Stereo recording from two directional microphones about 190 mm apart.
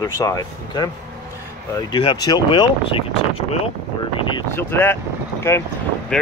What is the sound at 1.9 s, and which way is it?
Speech, 25° left (ahead or behind).